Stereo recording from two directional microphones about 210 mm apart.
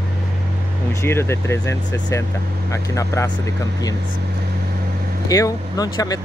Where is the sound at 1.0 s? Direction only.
10° left (ahead or behind).